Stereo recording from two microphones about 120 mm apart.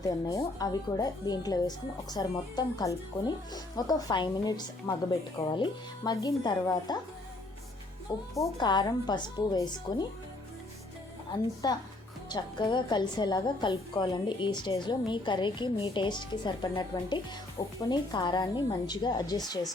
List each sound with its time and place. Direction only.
0.0 s a woman's voice: 30° left (ahead or behind)
8.4 s a woman's voice: 30° left (ahead or behind)
11.6 s a woman's voice: 35° left (ahead or behind)